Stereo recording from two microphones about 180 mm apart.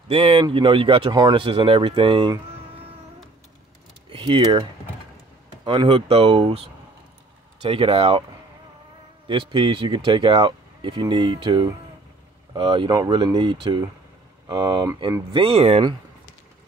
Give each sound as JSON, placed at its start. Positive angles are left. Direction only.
{"t": 0.1, "sound": "speech", "side_deg": -30}
{"t": 4.1, "sound": "speech", "side_deg": -30}
{"t": 5.7, "sound": "speech", "side_deg": -25}
{"t": 7.6, "sound": "speech", "side_deg": -30}
{"t": 9.3, "sound": "speech", "side_deg": -30}